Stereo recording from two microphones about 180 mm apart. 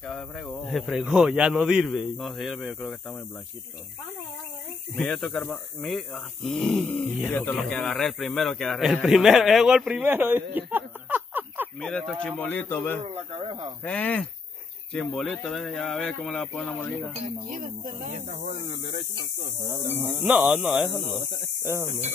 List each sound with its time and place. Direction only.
0.0 s a man's voice: 5° left (ahead or behind)
4.9 s a man's voice: 5° left (ahead or behind)
10.5 s a sound: 10° right (ahead or behind)
11.8 s a man's voice: centre (ahead or behind)
13.0 s speech: 30° right (ahead or behind)
13.8 s a man's voice: 10° left (ahead or behind)
17.5 s speech: 50° right (ahead or behind)
19.9 s speech: 10° right (ahead or behind)